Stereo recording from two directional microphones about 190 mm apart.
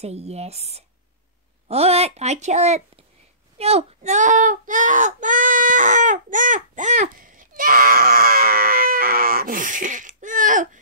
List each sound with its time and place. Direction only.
0.0 s speech: 35° right (ahead or behind)
3.5 s child singing: 35° right (ahead or behind)